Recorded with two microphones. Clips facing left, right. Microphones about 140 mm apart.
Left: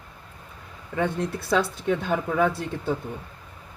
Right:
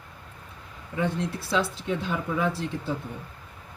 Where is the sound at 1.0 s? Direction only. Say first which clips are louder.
Left 2 dB; 55° left (ahead or behind).